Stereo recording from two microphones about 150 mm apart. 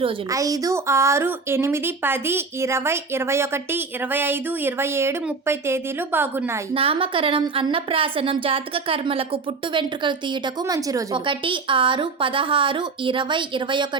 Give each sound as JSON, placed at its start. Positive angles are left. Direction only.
{"t": 0.3, "sound": "a woman's voice", "side_deg": -20}
{"t": 6.7, "sound": "a woman's voice", "side_deg": -35}